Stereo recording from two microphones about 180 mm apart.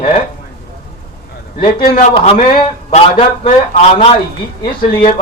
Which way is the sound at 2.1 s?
30° left (ahead or behind).